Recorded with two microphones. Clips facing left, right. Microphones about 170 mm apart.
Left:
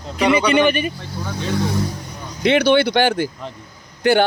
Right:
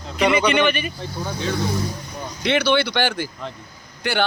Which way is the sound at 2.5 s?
50° left (ahead or behind).